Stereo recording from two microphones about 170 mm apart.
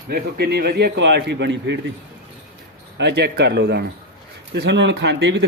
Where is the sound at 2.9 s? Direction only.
85° right.